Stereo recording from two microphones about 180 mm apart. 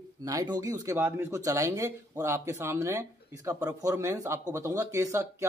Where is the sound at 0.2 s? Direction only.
20° right (ahead or behind).